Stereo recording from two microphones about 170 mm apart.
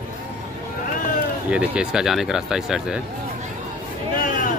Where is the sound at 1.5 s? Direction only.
5° right (ahead or behind).